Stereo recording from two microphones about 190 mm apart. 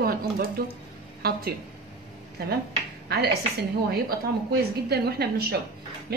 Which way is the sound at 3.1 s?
60° right (ahead or behind).